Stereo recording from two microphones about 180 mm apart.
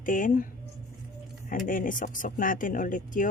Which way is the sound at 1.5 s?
50° left (ahead or behind).